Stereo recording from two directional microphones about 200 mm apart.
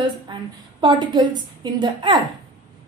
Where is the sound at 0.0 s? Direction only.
25° right (ahead or behind).